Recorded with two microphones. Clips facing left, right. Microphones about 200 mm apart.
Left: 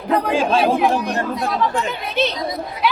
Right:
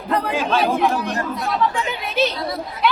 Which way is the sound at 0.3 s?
30° left (ahead or behind).